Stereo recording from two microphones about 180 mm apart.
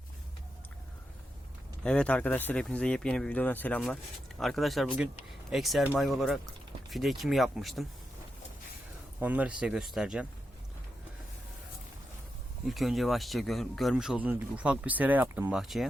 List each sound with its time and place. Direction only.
1.8 s speech: 5° left (ahead or behind)
9.2 s speech: 10° right (ahead or behind)
12.6 s speech: centre (ahead or behind)